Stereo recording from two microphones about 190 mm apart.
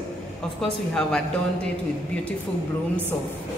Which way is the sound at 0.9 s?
5° left (ahead or behind).